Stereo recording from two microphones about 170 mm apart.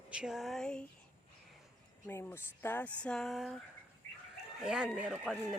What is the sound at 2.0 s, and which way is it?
Speech, 10° left (ahead or behind).